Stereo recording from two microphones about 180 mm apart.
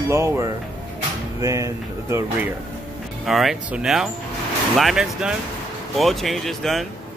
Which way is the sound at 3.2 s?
Centre (ahead or behind).